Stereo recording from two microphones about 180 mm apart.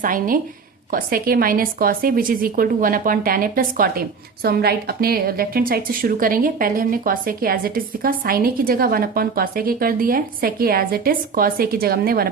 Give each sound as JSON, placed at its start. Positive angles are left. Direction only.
{"t": 0.0, "sound": "a woman's voice", "side_deg": -50}